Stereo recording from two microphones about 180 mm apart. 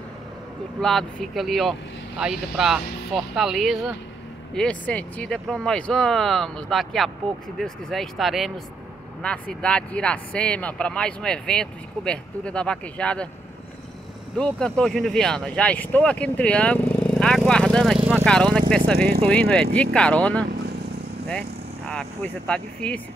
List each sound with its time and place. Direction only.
0.7 s speech: centre (ahead or behind)
14.3 s speech: 5° left (ahead or behind)
18.2 s speech: 5° left (ahead or behind)
18.9 s speech: 60° right (ahead or behind)
19.5 s speech: 5° left (ahead or behind)